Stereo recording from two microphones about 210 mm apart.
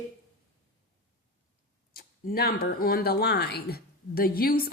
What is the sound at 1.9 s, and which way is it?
Speech, 45° left (ahead or behind).